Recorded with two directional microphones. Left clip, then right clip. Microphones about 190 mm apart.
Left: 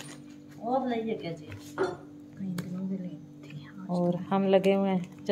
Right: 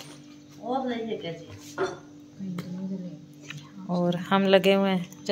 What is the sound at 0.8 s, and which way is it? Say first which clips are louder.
Speech: right 1 dB; 35° left (ahead or behind).